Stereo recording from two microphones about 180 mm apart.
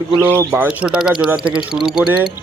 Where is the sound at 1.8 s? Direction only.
5° right (ahead or behind).